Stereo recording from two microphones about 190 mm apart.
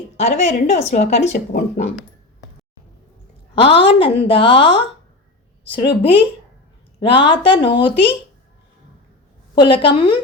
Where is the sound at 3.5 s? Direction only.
30° left (ahead or behind).